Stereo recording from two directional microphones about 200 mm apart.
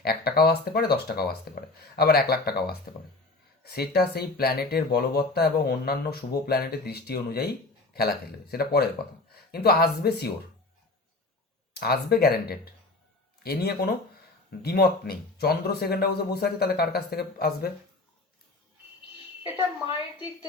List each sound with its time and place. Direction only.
0.0 s speech: 50° left (ahead or behind)
11.7 s speech: 50° left (ahead or behind)